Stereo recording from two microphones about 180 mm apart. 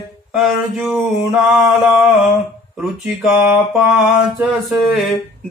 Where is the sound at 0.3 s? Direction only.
Centre (ahead or behind).